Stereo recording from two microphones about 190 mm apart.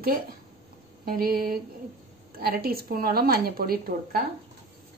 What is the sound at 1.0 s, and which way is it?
A woman's voice, 50° right (ahead or behind).